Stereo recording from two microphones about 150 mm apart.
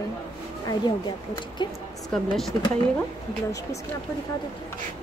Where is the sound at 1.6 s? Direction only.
30° left (ahead or behind).